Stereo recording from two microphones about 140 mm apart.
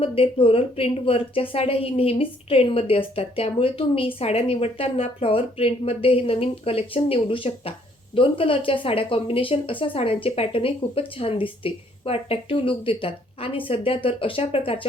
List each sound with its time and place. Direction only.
0.0 s a woman's voice: 40° left (ahead or behind)